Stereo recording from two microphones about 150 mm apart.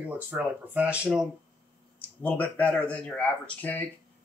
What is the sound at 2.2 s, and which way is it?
Speech, 10° left (ahead or behind).